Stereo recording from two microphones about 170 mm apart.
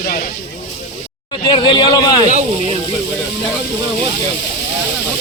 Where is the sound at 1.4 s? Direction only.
25° left (ahead or behind).